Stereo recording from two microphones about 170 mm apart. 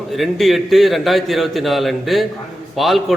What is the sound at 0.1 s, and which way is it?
A man's voice, centre (ahead or behind).